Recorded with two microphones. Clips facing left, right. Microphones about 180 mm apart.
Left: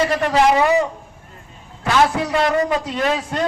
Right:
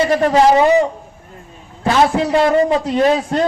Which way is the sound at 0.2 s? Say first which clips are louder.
Right 5 dB; 35° right (ahead or behind).